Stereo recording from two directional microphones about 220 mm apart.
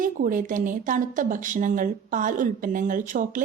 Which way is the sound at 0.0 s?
40° right (ahead or behind).